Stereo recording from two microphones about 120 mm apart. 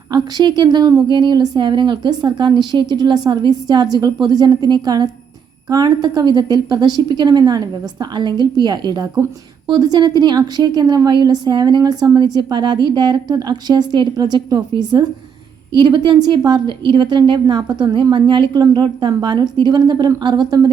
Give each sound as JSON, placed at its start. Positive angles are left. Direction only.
{"t": 0.1, "sound": "a woman's voice", "side_deg": -35}